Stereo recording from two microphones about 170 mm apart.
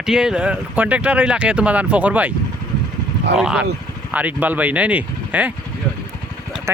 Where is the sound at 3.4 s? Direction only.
5° right (ahead or behind).